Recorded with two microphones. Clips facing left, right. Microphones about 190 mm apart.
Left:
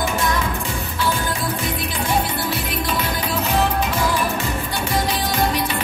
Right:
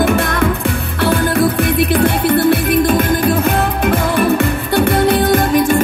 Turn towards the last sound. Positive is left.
turn(degrees=-50)  # may be behind; listen again after turning